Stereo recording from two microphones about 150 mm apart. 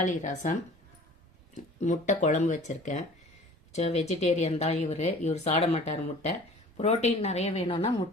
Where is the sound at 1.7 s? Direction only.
50° left (ahead or behind).